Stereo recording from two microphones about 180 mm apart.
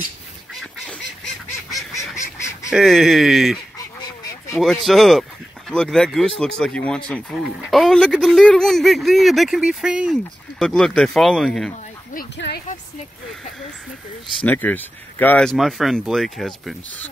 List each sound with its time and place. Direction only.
2.1 s duck: 15° left (ahead or behind)
2.7 s speech: centre (ahead or behind)
3.7 s duck: 20° left (ahead or behind)
4.8 s speech: centre (ahead or behind)
11.7 s a sound: 50° left (ahead or behind)
12.4 s speech: 70° left (ahead or behind)
14.4 s speech: 10° left (ahead or behind)